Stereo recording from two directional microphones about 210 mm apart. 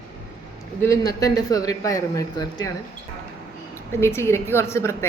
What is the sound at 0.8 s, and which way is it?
A woman's voice, 15° left (ahead or behind).